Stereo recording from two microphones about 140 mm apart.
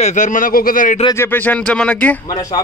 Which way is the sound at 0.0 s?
65° left (ahead or behind).